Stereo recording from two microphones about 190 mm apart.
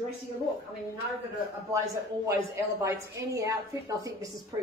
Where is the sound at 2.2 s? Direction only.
15° right (ahead or behind).